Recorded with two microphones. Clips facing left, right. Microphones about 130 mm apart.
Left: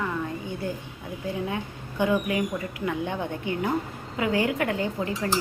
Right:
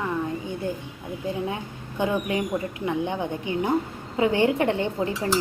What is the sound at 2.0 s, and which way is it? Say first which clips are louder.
Speech: left 1 dB; 25° right (ahead or behind).